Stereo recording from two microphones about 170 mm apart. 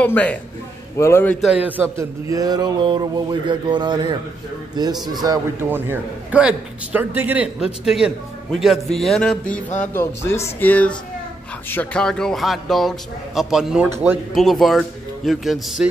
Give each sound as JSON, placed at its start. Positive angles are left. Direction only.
{"t": 0.0, "sound": "speech", "side_deg": 10}
{"t": 1.4, "sound": "a sound", "side_deg": -5}
{"t": 5.0, "sound": "a man's voice", "side_deg": -20}